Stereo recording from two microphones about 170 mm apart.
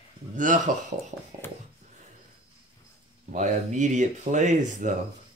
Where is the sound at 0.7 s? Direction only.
50° right (ahead or behind).